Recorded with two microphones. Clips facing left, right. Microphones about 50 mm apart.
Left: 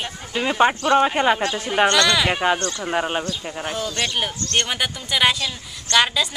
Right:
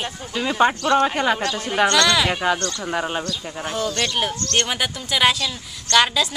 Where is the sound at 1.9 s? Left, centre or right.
Centre.